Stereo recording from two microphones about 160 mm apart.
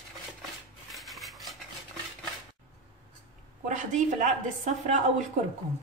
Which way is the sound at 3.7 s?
50° right (ahead or behind).